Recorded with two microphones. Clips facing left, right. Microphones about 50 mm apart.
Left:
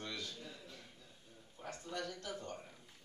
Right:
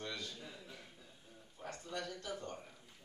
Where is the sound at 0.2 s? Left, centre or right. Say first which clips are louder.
Even; centre.